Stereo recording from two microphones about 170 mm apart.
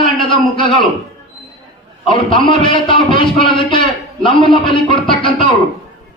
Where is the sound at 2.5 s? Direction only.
30° left (ahead or behind).